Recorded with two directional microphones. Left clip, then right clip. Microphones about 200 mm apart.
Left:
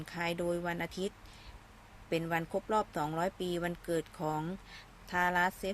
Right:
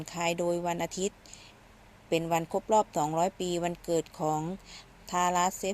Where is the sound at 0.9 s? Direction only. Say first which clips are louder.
Right 5 dB; 25° left (ahead or behind).